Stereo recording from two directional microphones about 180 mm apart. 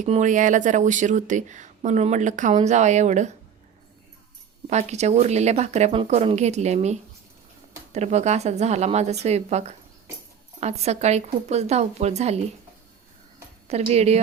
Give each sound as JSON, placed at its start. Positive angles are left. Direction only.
{"t": 0.0, "sound": "speech", "side_deg": -45}
{"t": 4.7, "sound": "speech", "side_deg": -40}
{"t": 13.7, "sound": "speech", "side_deg": -35}